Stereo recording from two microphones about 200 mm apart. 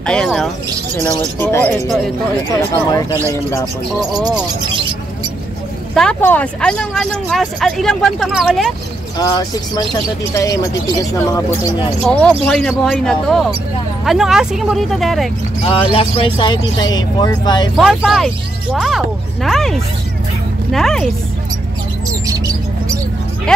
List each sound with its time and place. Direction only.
0.0 s speech: 5° left (ahead or behind)
2.7 s speech: 20° left (ahead or behind)
5.9 s speech: 5° left (ahead or behind)
9.2 s speech: 20° left (ahead or behind)
12.1 s speech: 5° left (ahead or behind)
15.6 s speech: 25° left (ahead or behind)
17.7 s speech: centre (ahead or behind)
22.2 s a sound: 15° right (ahead or behind)